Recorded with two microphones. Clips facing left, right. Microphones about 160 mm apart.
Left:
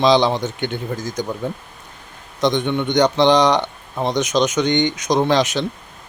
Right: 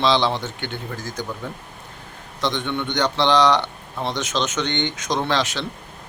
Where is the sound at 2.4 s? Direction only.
15° left (ahead or behind).